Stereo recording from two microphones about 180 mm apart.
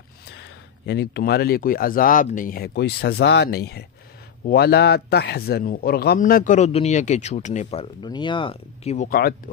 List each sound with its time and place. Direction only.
0.4 s a man's voice: 70° left (ahead or behind); by 9.2 s 40° left (ahead or behind)